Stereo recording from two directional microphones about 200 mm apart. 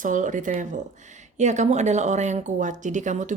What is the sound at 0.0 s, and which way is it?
A woman's voice, 40° right (ahead or behind).